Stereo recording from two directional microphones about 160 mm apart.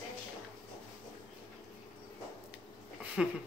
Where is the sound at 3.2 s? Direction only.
5° right (ahead or behind).